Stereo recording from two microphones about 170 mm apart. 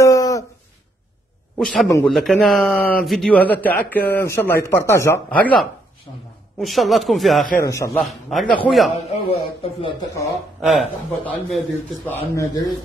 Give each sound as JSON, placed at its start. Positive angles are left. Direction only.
{"t": 0.0, "sound": "a sound", "side_deg": 20}
{"t": 1.6, "sound": "a man's voice", "side_deg": 5}
{"t": 7.6, "sound": "speech", "side_deg": 15}
{"t": 8.0, "sound": "a man's voice", "side_deg": 0}
{"t": 8.9, "sound": "speech", "side_deg": 35}
{"t": 10.6, "sound": "a man's voice", "side_deg": 0}
{"t": 12.1, "sound": "speech", "side_deg": 15}